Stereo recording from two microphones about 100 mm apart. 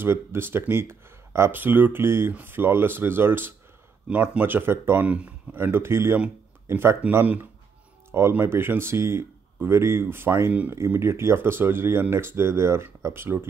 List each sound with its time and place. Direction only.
0.0 s speech: 25° right (ahead or behind)